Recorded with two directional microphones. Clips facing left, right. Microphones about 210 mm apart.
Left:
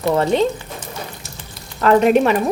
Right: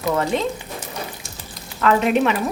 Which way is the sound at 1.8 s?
40° left (ahead or behind).